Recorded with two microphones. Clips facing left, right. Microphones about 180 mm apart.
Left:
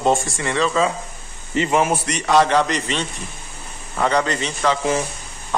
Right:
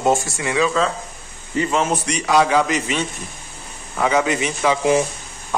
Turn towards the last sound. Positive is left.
turn(degrees=-15)  # may be behind; listen again after turning